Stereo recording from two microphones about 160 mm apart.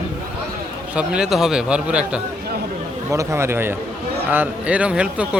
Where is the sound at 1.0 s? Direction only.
5° right (ahead or behind).